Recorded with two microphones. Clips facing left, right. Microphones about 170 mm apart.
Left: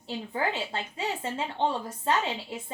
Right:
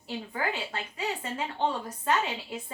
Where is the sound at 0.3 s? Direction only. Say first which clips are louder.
Left 3 dB; 25° left (ahead or behind).